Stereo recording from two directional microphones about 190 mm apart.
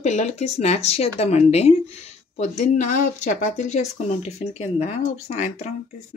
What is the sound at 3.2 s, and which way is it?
Speech, 40° left (ahead or behind).